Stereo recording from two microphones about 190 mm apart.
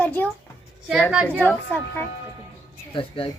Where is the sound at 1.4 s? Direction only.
10° left (ahead or behind).